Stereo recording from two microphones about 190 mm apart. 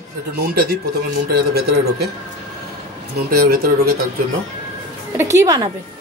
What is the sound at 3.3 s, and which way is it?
Speech, 50° right (ahead or behind).